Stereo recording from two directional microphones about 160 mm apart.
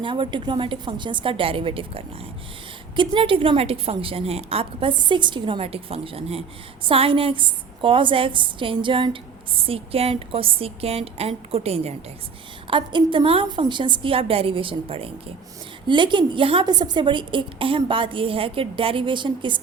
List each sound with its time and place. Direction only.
0.0 s a woman's voice: 30° right (ahead or behind)